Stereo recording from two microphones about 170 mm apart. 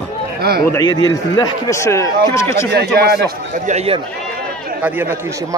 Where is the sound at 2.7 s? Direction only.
65° right (ahead or behind).